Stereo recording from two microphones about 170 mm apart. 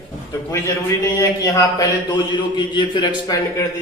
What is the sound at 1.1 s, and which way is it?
Speech, 20° left (ahead or behind).